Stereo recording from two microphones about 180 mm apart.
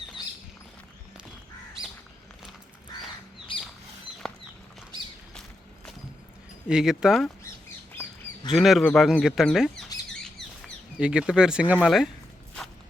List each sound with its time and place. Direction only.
3.5 s a sound: 25° left (ahead or behind)
4.2 s a sound: 5° left (ahead or behind)
6.7 s speech: 5° right (ahead or behind)
8.5 s speech: centre (ahead or behind)
8.9 s bird: 5° left (ahead or behind)
10.9 s speech: 5° right (ahead or behind)